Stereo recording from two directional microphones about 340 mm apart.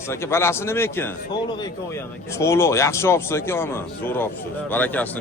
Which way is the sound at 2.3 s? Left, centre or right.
Centre.